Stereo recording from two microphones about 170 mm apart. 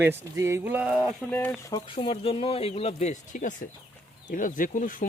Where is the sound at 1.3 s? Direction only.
10° left (ahead or behind).